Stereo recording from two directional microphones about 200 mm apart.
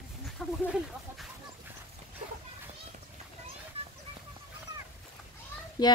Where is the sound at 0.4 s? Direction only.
5° left (ahead or behind).